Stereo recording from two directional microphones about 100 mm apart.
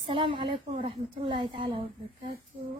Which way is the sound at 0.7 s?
90° right.